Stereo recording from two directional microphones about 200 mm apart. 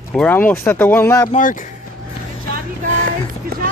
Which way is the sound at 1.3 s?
40° left (ahead or behind).